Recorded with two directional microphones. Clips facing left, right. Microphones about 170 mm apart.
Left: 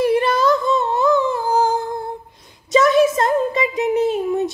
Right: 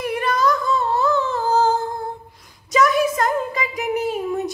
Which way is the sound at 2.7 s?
25° left (ahead or behind).